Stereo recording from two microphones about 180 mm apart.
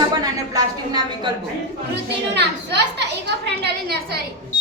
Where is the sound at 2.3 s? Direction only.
70° right (ahead or behind).